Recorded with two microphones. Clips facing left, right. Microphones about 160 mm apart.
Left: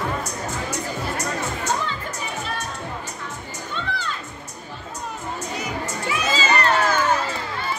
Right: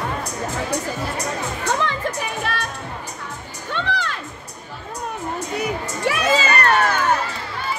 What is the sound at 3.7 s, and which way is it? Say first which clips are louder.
Music: right 5 dB; 75° right (ahead or behind).